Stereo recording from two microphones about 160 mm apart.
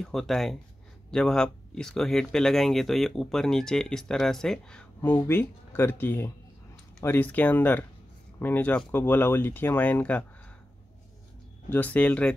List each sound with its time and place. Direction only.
0.0 s speech: centre (ahead or behind)
11.7 s speech: 10° left (ahead or behind)